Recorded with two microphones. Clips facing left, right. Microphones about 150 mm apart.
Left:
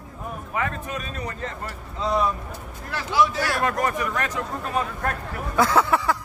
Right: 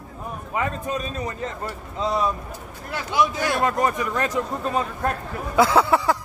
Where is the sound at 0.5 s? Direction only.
25° right (ahead or behind).